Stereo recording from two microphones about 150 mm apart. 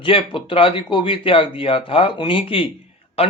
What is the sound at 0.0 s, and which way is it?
Speech, 35° left (ahead or behind).